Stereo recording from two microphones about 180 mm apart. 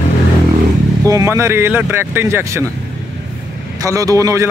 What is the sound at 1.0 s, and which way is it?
Speech, 20° right (ahead or behind).